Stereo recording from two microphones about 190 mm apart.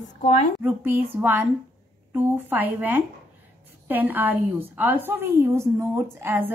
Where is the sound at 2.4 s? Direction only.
10° right (ahead or behind).